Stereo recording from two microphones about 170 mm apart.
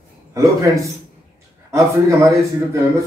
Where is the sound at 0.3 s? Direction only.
20° right (ahead or behind).